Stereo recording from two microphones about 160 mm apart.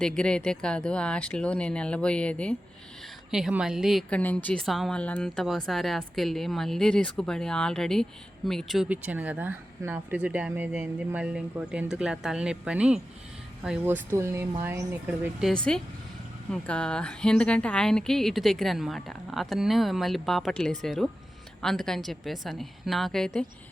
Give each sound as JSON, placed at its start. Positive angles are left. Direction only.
{"t": 0.0, "sound": "speech", "side_deg": 5}
{"t": 3.3, "sound": "speech", "side_deg": -5}
{"t": 4.2, "sound": "speech", "side_deg": 10}